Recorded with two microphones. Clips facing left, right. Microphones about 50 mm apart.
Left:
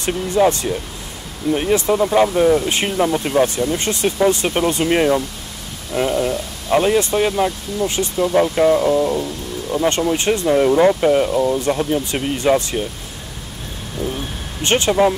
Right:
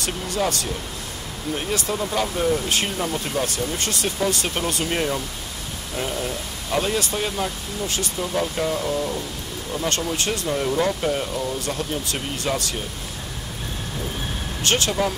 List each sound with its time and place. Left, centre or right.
0.0 s speech: left
14.6 s speech: left